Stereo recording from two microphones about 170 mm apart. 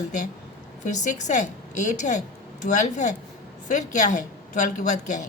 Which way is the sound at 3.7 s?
45° left (ahead or behind).